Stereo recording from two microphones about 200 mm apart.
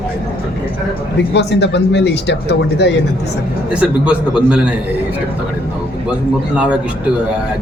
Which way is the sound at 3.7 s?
5° right (ahead or behind).